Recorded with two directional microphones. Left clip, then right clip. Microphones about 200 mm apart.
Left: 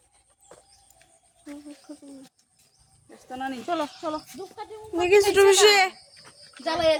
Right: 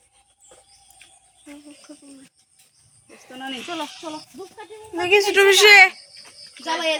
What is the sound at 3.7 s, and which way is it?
Speech, 45° left (ahead or behind).